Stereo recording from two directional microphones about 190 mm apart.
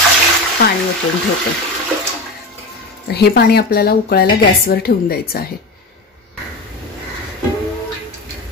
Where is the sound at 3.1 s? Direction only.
55° left (ahead or behind).